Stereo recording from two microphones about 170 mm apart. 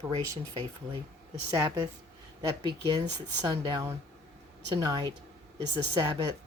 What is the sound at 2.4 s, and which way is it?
Speech, 25° right (ahead or behind).